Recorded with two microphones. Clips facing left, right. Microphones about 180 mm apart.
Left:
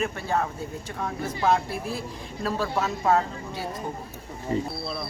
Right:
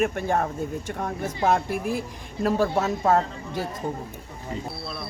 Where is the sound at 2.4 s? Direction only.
45° right (ahead or behind).